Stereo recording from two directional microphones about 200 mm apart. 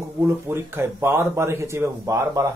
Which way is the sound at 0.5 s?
10° right (ahead or behind).